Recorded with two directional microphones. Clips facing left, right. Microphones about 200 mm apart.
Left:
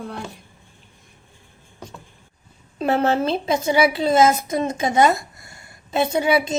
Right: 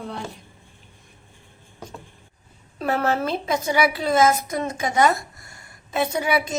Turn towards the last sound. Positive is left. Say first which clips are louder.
# left 4 dB
turn(degrees=25)  # may be behind; listen again after turning